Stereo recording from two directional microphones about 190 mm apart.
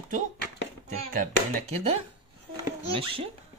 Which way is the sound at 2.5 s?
30° right (ahead or behind).